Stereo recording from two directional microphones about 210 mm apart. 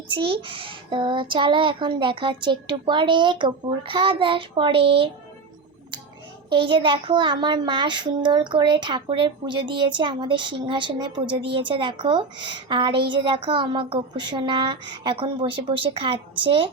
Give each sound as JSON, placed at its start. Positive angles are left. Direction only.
{"t": 0.1, "sound": "a woman's voice", "side_deg": -25}
{"t": 6.5, "sound": "a woman's voice", "side_deg": -25}